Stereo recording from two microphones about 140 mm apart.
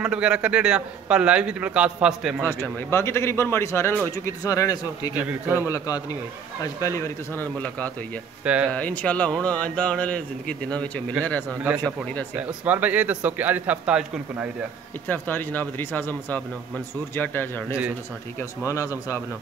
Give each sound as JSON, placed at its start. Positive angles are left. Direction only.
{"t": 0.0, "sound": "a man's voice", "side_deg": -5}
{"t": 2.9, "sound": "a man's voice", "side_deg": 20}
{"t": 5.1, "sound": "a man's voice", "side_deg": -15}
{"t": 5.7, "sound": "a man's voice", "side_deg": 25}
{"t": 8.5, "sound": "a man's voice", "side_deg": -10}
{"t": 8.7, "sound": "speech", "side_deg": 10}
{"t": 12.4, "sound": "a man's voice", "side_deg": -10}
{"t": 15.0, "sound": "a man's voice", "side_deg": 15}